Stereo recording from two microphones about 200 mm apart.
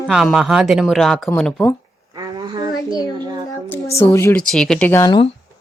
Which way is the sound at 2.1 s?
20° right (ahead or behind).